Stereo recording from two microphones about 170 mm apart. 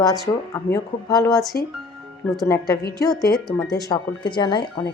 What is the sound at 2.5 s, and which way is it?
Speech, 20° left (ahead or behind).